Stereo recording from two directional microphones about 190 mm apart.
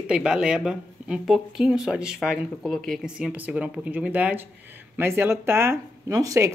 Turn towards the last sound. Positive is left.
turn(degrees=-15)  # may be behind; listen again after turning